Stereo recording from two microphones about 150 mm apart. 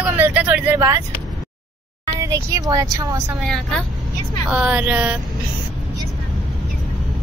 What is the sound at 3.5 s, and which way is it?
Speech, 5° left (ahead or behind).